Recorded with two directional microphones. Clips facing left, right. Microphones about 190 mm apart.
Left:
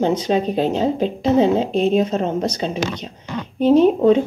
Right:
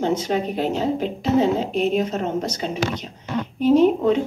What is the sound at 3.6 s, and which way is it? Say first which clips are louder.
Speech: left 3 dB; 20° left (ahead or behind).